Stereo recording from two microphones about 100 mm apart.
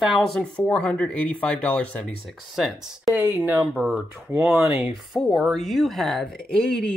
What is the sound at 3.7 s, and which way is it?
Speech, 5° right (ahead or behind).